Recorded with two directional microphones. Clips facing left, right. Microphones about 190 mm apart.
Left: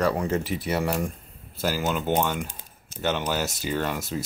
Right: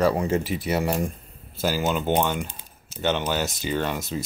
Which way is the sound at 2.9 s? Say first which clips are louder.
Right 2 dB; 5° left (ahead or behind).